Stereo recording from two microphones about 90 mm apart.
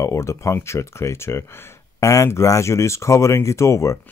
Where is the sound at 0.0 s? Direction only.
35° left (ahead or behind).